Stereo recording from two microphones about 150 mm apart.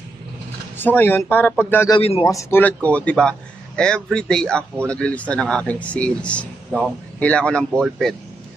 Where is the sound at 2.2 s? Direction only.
20° left (ahead or behind).